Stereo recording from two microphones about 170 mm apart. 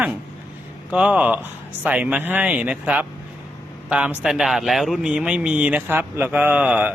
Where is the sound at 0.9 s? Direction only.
5° right (ahead or behind).